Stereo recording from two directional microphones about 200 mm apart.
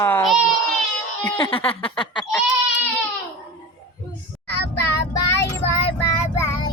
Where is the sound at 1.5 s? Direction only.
25° left (ahead or behind).